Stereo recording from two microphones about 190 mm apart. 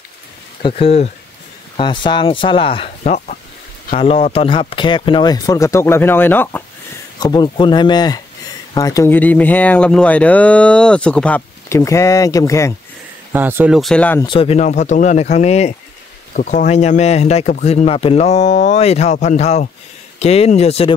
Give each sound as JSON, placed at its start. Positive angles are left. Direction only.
{"t": 0.6, "sound": "speech", "side_deg": 30}
{"t": 13.3, "sound": "speech", "side_deg": -10}
{"t": 13.7, "sound": "speech", "side_deg": 5}
{"t": 14.2, "sound": "speech", "side_deg": 30}